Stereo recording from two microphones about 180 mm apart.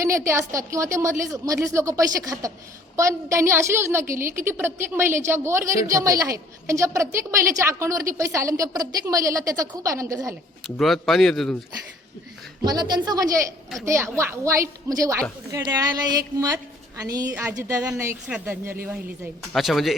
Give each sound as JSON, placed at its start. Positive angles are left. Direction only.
{"t": 0.0, "sound": "a woman's voice", "side_deg": -15}
{"t": 10.8, "sound": "a woman's voice", "side_deg": 0}
{"t": 12.6, "sound": "a woman's voice", "side_deg": -25}
{"t": 17.0, "sound": "a woman's voice", "side_deg": -20}